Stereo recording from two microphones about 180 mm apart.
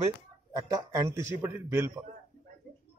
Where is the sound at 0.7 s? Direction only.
15° right (ahead or behind).